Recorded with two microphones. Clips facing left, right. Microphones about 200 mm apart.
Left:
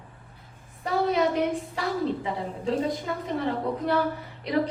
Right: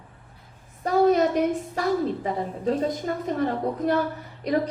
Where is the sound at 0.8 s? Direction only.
45° right (ahead or behind).